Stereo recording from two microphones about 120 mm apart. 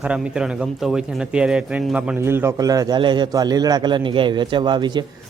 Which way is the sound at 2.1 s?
20° right (ahead or behind).